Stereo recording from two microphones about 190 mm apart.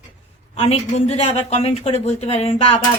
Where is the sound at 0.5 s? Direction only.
35° left (ahead or behind).